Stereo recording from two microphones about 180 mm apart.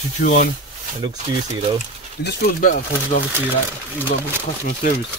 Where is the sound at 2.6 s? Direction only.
45° left (ahead or behind).